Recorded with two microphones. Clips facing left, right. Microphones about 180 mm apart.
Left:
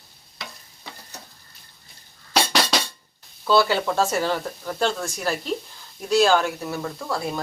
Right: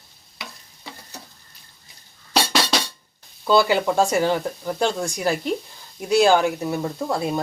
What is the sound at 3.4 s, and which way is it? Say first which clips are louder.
Speech: right 2 dB; 15° right (ahead or behind).